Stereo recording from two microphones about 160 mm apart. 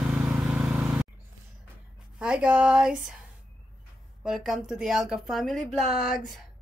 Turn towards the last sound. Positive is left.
turn(degrees=0)  # may be behind; listen again after turning